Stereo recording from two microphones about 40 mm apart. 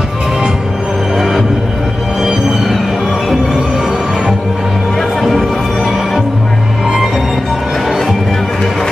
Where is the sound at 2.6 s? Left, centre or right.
Centre.